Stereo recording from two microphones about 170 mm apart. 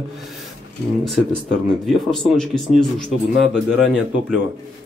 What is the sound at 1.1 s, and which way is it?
Speech, centre (ahead or behind).